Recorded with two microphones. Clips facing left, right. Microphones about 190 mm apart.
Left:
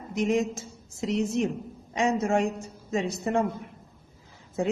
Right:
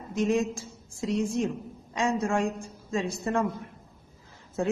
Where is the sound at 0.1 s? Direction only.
15° left (ahead or behind).